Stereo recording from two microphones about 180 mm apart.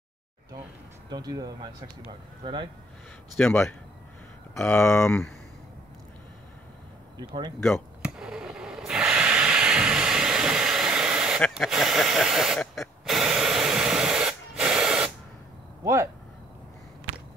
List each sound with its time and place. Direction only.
1.1 s speech: 20° right (ahead or behind)
3.3 s speech: 10° left (ahead or behind)
8.0 s a sound: 5° right (ahead or behind)
15.8 s speech: 15° right (ahead or behind)